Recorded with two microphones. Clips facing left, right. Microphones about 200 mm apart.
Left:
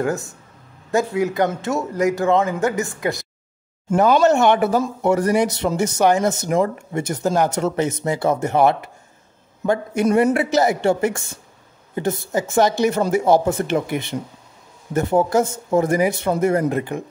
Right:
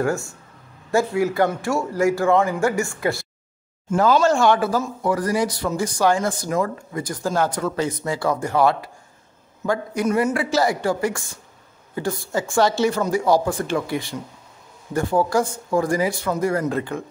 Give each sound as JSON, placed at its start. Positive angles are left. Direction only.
{"t": 0.0, "sound": "speech", "side_deg": 20}